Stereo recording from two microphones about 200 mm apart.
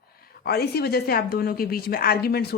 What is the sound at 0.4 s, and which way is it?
A woman's voice, 50° left (ahead or behind).